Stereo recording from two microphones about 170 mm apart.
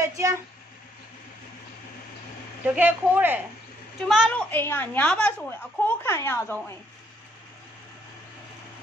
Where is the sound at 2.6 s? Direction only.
10° right (ahead or behind).